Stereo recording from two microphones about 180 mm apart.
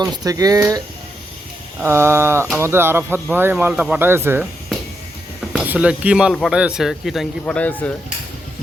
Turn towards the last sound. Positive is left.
turn(degrees=10)  # may be behind; listen again after turning